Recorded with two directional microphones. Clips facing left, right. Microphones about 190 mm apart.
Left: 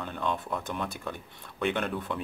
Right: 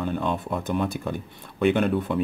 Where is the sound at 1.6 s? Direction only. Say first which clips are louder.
Right 9 dB; 5° right (ahead or behind).